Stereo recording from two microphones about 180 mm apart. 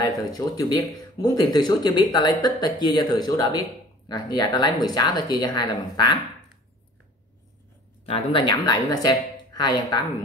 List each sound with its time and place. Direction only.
0.2 s speech: 20° left (ahead or behind)
8.0 s speech: 30° left (ahead or behind)